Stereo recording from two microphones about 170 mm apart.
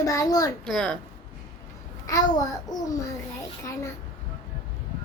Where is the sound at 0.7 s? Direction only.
5° left (ahead or behind).